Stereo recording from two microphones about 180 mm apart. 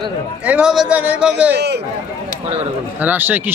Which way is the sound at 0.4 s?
5° right (ahead or behind).